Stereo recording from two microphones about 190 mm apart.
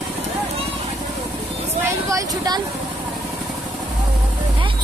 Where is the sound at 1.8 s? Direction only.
15° right (ahead or behind).